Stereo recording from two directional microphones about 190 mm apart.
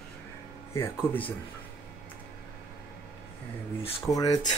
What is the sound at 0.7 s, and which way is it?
Speech, 10° left (ahead or behind).